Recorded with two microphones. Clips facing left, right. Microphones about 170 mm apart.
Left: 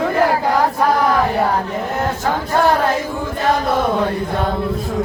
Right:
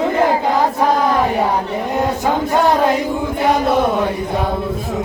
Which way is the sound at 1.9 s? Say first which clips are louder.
Right 4 dB; 15° right (ahead or behind).